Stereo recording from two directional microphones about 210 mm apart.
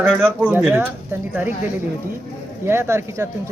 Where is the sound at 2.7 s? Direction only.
10° right (ahead or behind).